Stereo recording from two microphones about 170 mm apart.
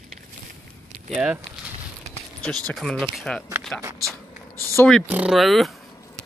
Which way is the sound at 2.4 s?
5° left (ahead or behind).